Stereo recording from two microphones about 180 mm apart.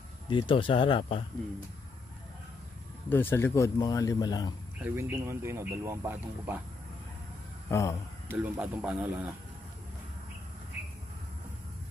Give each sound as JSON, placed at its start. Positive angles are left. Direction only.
{"t": 0.3, "sound": "speech", "side_deg": 30}
{"t": 3.1, "sound": "speech", "side_deg": 10}
{"t": 4.8, "sound": "speech", "side_deg": -10}
{"t": 7.7, "sound": "speech", "side_deg": 15}
{"t": 8.3, "sound": "speech", "side_deg": -10}